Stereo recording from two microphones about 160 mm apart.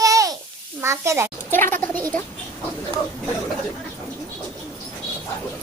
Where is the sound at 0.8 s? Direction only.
15° right (ahead or behind).